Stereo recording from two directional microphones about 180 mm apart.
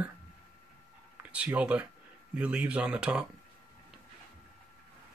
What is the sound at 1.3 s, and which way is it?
Speech, 5° right (ahead or behind).